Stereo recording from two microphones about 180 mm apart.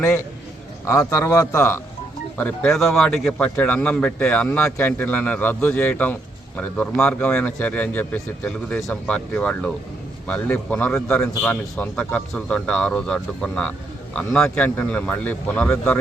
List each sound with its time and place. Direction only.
0.9 s a man's voice: 15° left (ahead or behind)